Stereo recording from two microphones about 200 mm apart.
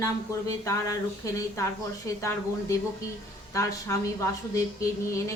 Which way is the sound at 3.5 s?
15° left (ahead or behind).